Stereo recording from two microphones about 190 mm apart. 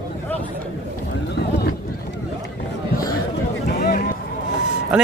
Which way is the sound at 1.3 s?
60° left (ahead or behind).